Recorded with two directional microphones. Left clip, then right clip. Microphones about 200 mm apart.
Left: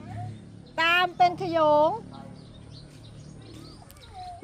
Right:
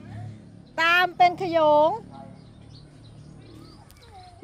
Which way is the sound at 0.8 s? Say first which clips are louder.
Right 2 dB; 10° right (ahead or behind).